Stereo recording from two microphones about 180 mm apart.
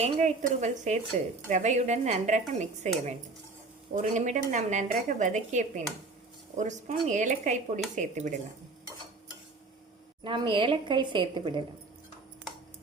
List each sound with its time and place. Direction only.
0.0 s a woman's voice: 40° right (ahead or behind)
10.2 s a woman's voice: 25° right (ahead or behind)